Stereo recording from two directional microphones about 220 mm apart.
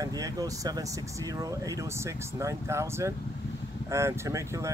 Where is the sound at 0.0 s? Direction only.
15° right (ahead or behind).